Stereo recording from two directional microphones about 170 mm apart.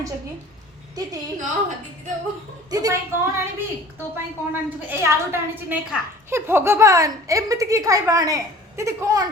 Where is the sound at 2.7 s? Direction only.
20° right (ahead or behind).